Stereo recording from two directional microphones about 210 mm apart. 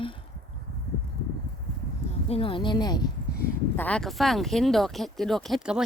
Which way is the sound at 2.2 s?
25° left (ahead or behind).